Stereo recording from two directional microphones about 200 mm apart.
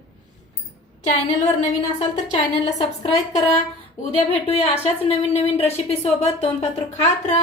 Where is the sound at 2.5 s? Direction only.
25° left (ahead or behind).